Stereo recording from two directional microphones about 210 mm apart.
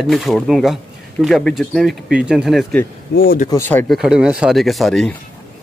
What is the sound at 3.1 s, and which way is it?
Speech, 45° left (ahead or behind).